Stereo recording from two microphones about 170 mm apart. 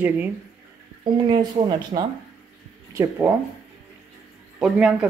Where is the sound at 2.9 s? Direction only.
15° right (ahead or behind).